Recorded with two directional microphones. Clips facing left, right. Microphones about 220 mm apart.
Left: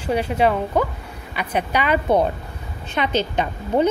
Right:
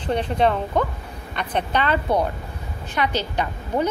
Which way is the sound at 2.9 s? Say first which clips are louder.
Left 3 dB; 20° left (ahead or behind).